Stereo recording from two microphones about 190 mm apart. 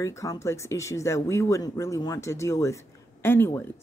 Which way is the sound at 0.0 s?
15° left (ahead or behind).